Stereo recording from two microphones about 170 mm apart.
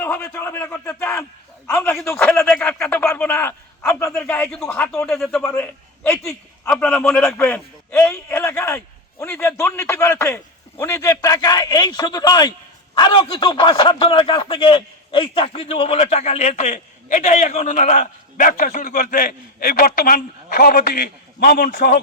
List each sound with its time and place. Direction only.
0.0 s a man's voice: 10° left (ahead or behind); by 22.0 s 55° left (ahead or behind)